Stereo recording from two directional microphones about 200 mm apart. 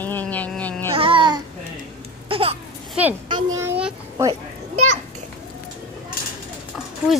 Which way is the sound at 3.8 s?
5° right (ahead or behind).